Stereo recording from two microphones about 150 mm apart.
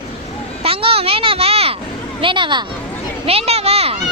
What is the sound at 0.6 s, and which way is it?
A child's voice, 40° right (ahead or behind).